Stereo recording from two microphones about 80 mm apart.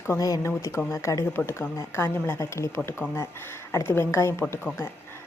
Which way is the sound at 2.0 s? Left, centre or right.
Left.